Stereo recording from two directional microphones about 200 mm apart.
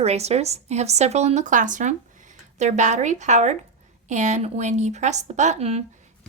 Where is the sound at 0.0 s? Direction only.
30° right (ahead or behind).